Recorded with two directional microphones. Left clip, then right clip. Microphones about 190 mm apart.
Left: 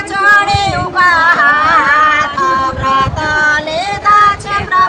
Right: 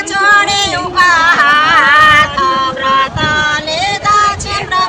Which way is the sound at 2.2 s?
55° left (ahead or behind).